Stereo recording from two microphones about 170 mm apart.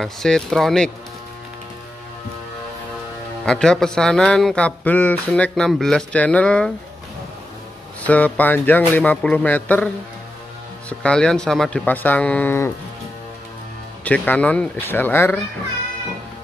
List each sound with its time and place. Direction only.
0.0 s a man's voice: centre (ahead or behind)
3.4 s a man's voice: 5° left (ahead or behind)
8.0 s speech: 10° left (ahead or behind)
10.9 s speech: 5° left (ahead or behind)
14.0 s speech: 10° left (ahead or behind)